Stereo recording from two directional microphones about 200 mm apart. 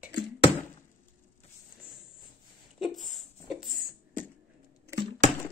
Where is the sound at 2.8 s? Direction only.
Centre (ahead or behind).